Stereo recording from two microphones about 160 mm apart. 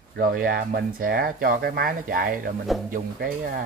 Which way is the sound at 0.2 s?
60° right (ahead or behind).